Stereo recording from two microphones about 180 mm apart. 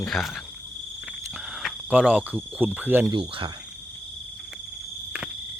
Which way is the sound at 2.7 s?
10° right (ahead or behind).